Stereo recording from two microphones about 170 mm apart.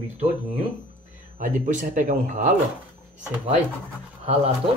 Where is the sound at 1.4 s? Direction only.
50° right (ahead or behind).